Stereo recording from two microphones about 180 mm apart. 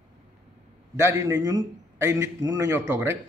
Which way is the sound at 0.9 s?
15° right (ahead or behind).